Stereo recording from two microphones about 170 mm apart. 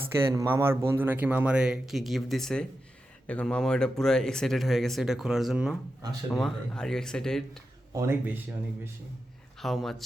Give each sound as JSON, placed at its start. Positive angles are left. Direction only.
{"t": 0.3, "sound": "speech", "side_deg": -15}
{"t": 7.9, "sound": "speech", "side_deg": -15}
{"t": 9.6, "sound": "a man's voice", "side_deg": 0}